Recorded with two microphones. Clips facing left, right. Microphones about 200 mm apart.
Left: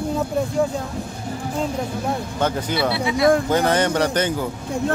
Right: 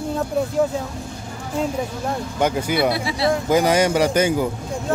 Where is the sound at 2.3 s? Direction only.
10° right (ahead or behind).